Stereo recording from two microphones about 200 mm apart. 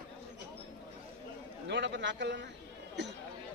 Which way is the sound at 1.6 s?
60° right (ahead or behind).